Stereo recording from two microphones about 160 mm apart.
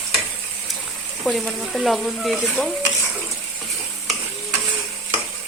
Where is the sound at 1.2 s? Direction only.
Centre (ahead or behind).